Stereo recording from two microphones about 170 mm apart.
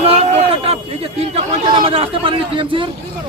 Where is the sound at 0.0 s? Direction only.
35° right (ahead or behind).